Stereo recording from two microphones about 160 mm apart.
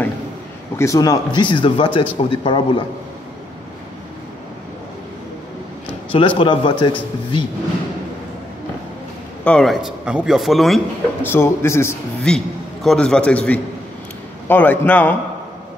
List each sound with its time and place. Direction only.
0.7 s speech: 20° left (ahead or behind)
6.1 s speech: 30° left (ahead or behind)
9.4 s a man's voice: 5° left (ahead or behind)
11.2 s a man's voice: 15° left (ahead or behind)